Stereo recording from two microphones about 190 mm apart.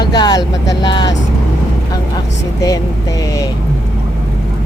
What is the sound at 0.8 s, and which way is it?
Speech, 20° left (ahead or behind).